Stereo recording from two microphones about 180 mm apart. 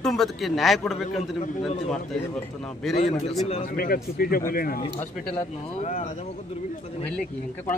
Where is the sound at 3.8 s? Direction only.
55° left (ahead or behind).